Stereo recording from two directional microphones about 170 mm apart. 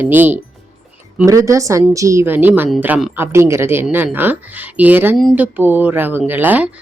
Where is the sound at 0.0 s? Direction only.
10° right (ahead or behind).